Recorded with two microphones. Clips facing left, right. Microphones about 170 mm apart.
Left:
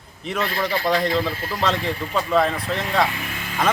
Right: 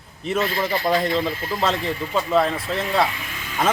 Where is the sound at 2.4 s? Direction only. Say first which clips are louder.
Even; 35° right (ahead or behind).